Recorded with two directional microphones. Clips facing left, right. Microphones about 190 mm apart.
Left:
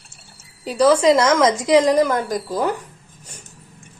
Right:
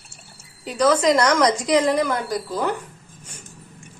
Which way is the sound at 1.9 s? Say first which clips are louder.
Left 4 dB; 45° left (ahead or behind).